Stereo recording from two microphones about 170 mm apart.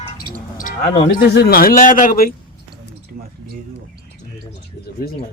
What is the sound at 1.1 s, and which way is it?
A man's voice, 70° left (ahead or behind).